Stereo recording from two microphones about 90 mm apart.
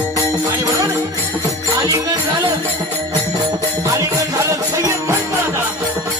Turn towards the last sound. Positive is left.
turn(degrees=-25)  # may be behind; listen again after turning